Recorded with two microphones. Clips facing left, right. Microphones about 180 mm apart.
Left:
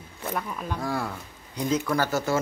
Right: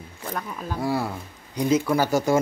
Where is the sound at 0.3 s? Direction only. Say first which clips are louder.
Even; centre (ahead or behind).